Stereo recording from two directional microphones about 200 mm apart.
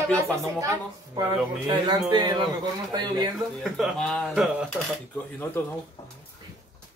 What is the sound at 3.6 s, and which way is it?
Speech, centre (ahead or behind).